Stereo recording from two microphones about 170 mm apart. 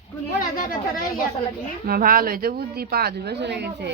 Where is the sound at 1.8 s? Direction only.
55° right (ahead or behind).